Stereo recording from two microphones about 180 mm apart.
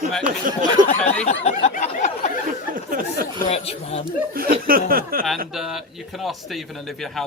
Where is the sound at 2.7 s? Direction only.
50° right (ahead or behind).